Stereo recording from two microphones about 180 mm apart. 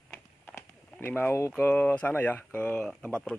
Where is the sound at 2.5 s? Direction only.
10° left (ahead or behind).